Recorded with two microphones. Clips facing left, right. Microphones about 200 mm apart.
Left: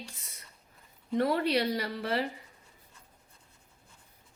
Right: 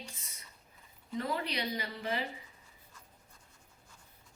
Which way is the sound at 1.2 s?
70° left (ahead or behind).